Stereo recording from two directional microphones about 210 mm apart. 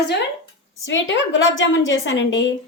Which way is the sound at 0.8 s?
60° left (ahead or behind).